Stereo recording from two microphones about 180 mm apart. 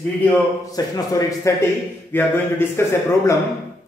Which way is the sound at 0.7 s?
20° left (ahead or behind).